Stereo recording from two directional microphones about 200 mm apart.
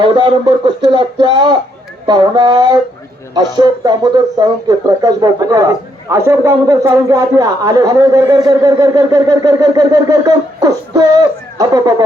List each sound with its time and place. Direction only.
0.0 s speech: 25° right (ahead or behind)